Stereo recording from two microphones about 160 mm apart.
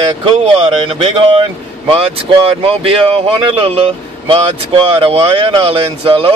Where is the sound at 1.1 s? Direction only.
35° right (ahead or behind).